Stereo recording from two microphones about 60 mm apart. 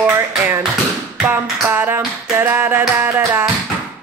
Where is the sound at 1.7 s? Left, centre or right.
Right.